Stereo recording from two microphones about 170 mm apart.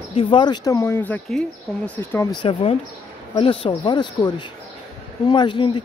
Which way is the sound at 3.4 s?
30° left (ahead or behind).